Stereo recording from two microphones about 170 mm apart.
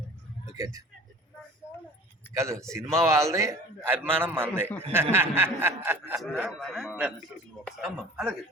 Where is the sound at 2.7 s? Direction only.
15° right (ahead or behind).